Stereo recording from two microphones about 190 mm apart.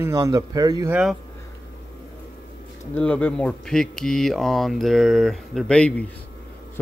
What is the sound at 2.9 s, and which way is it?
Speech, 10° left (ahead or behind).